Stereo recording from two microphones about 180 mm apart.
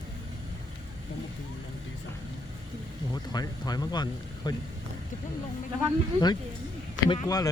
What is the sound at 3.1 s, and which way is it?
Speech, 20° left (ahead or behind).